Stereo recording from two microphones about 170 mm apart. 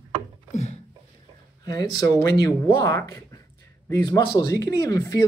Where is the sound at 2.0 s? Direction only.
20° left (ahead or behind).